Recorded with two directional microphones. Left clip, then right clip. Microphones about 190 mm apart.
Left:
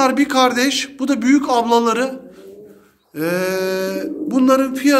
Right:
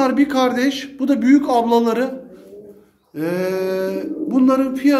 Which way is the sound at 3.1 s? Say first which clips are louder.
Left 2 dB; centre (ahead or behind).